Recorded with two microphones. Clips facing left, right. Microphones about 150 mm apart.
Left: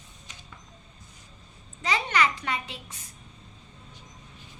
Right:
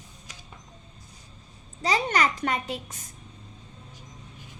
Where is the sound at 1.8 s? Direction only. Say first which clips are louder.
Right 2 dB; 40° right (ahead or behind).